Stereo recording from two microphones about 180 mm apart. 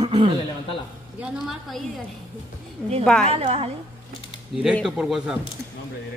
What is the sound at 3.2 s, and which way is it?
Speech, 35° right (ahead or behind).